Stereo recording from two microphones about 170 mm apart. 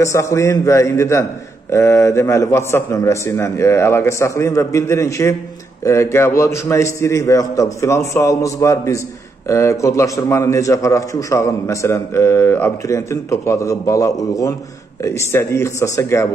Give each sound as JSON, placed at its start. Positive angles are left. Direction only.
{"t": 0.0, "sound": "a man's voice", "side_deg": 15}